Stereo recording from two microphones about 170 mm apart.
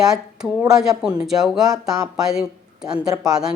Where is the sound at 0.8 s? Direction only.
5° right (ahead or behind).